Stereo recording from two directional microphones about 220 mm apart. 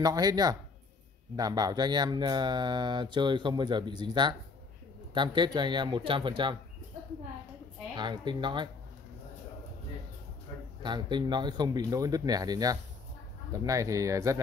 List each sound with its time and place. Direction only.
0.0 s speech: 15° right (ahead or behind)
7.9 s speech: 20° right (ahead or behind)
10.8 s speech: 20° right (ahead or behind)